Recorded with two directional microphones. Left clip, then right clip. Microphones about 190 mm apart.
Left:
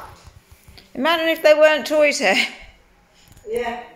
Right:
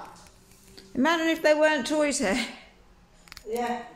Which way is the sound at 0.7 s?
20° right (ahead or behind).